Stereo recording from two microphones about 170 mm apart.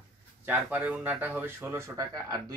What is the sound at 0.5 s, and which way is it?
Speech, 10° right (ahead or behind).